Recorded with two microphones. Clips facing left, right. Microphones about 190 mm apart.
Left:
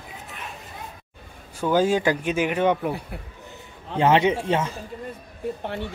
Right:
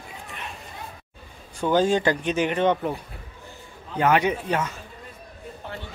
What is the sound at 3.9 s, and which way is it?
Speech, 25° left (ahead or behind).